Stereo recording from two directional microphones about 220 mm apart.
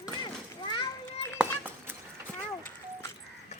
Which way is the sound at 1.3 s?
10° right (ahead or behind).